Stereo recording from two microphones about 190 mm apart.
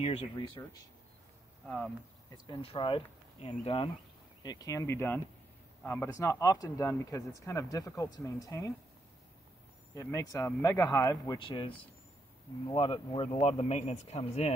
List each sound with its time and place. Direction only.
0.0 s speech: 30° left (ahead or behind)
0.6 s speech: 20° left (ahead or behind)
2.3 s speech: 30° left (ahead or behind)
9.9 s speech: 15° left (ahead or behind)
12.7 s speech: 25° left (ahead or behind)